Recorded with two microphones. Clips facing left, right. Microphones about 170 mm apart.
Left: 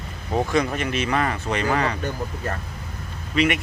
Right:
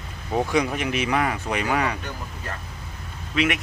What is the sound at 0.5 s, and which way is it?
Speech, 10° right (ahead or behind).